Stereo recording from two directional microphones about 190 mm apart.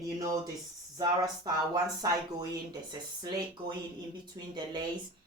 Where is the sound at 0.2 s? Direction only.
20° right (ahead or behind).